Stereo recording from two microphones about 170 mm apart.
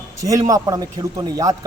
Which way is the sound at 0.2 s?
20° right (ahead or behind).